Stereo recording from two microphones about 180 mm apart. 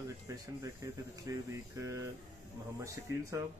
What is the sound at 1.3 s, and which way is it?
Speech, 15° right (ahead or behind).